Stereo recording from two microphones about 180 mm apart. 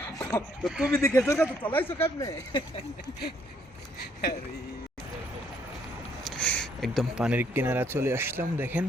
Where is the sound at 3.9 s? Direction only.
60° left (ahead or behind).